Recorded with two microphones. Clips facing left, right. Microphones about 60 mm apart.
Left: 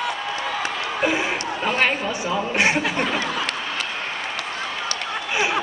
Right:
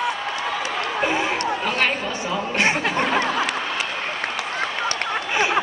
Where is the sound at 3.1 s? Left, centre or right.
Right.